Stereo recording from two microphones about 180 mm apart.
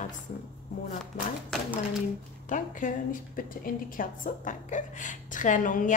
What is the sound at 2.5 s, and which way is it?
A woman's voice, 45° left (ahead or behind).